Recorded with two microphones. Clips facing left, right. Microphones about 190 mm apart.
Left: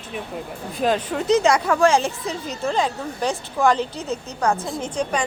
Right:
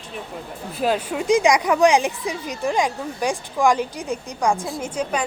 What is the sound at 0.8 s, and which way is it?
A woman's voice, 5° right (ahead or behind).